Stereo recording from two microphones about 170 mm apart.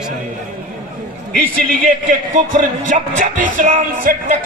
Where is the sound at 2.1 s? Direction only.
50° right (ahead or behind).